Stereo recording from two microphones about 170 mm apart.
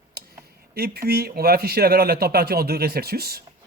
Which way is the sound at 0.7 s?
65° right (ahead or behind).